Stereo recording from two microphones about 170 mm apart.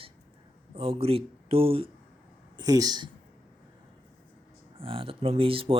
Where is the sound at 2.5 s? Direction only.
20° right (ahead or behind).